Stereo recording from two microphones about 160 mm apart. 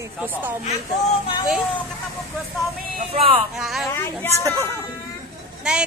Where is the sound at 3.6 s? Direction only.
Centre (ahead or behind).